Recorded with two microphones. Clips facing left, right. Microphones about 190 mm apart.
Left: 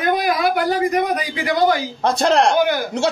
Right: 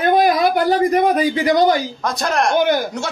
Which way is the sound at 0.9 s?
35° right (ahead or behind).